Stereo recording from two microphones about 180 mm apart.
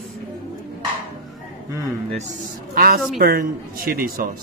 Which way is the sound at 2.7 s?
55° right (ahead or behind).